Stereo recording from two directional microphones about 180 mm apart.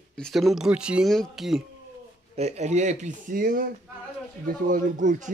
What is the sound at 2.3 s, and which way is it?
Speech, 40° right (ahead or behind).